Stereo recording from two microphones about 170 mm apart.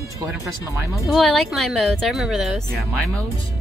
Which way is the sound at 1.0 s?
Centre (ahead or behind).